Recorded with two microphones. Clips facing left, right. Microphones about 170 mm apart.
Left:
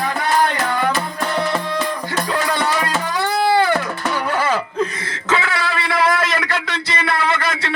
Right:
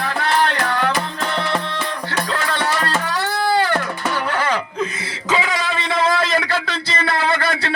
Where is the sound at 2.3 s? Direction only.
10° left (ahead or behind).